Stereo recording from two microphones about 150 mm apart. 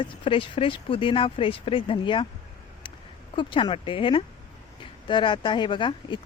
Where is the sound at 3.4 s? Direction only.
35° left (ahead or behind).